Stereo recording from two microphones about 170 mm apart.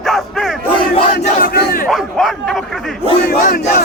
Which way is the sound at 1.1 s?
70° left (ahead or behind).